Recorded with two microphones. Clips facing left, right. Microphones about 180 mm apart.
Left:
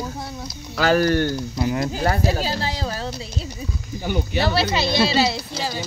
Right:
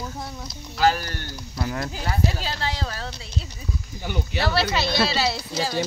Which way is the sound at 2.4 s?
35° left (ahead or behind).